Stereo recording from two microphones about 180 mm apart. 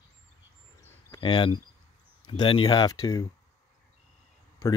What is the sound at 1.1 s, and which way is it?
Speech, 25° left (ahead or behind).